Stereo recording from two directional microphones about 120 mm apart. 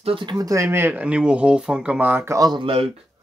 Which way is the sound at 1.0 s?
10° right (ahead or behind).